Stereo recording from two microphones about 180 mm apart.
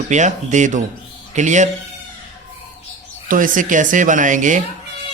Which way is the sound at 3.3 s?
50° right (ahead or behind).